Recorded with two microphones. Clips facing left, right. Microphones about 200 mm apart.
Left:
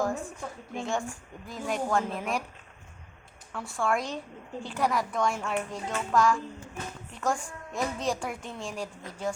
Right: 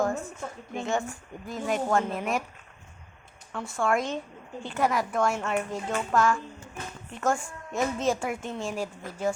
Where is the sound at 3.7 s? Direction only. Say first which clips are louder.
Right 2 dB; centre (ahead or behind).